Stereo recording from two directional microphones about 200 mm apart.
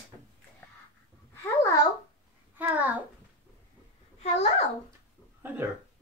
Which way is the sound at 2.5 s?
10° right (ahead or behind).